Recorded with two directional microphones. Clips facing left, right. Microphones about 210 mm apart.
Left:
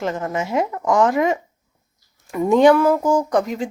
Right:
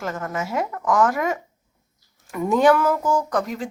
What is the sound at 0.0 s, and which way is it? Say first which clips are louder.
Speech: left 4 dB; 20° left (ahead or behind).